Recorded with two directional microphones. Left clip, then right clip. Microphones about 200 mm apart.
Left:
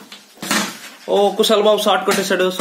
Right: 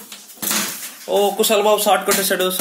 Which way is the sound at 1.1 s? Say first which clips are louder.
Left 2 dB; 30° left (ahead or behind).